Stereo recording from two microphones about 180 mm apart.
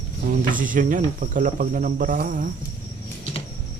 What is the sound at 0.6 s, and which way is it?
Speech, 50° right (ahead or behind).